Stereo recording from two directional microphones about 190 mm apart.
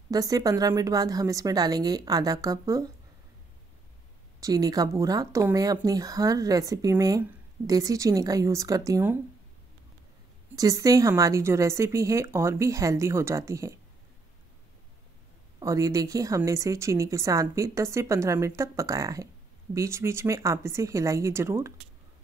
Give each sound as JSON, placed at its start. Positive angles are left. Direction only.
{"t": 0.1, "sound": "a woman's voice", "side_deg": -20}
{"t": 4.4, "sound": "speech", "side_deg": -20}
{"t": 10.5, "sound": "speech", "side_deg": -20}
{"t": 15.6, "sound": "speech", "side_deg": -15}